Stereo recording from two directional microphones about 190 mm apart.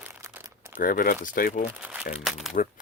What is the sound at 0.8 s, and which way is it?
Speech, 45° left (ahead or behind).